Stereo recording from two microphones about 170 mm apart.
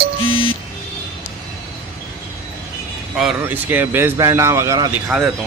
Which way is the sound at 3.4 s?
10° right (ahead or behind).